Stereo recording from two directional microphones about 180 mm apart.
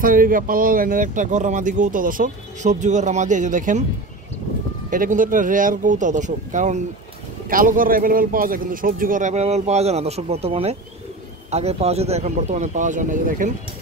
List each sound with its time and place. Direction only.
0.0 s speech: 50° right (ahead or behind)
4.9 s speech: 50° right (ahead or behind)